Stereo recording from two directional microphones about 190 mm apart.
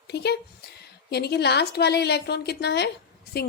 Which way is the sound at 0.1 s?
60° left (ahead or behind).